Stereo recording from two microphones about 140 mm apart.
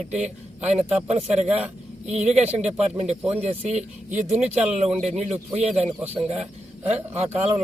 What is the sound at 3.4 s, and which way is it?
Speech, 50° right (ahead or behind).